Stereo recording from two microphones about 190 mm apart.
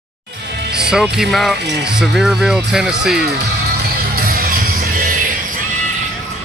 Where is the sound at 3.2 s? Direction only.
60° right (ahead or behind).